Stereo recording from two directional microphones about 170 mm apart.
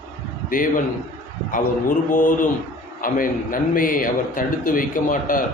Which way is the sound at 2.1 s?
50° left (ahead or behind).